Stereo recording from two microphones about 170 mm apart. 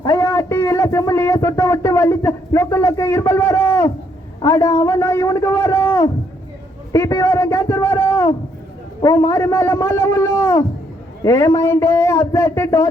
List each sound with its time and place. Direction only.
0.0 s a man's voice: 15° left (ahead or behind)